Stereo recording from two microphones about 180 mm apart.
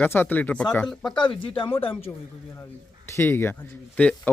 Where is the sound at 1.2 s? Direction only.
30° left (ahead or behind).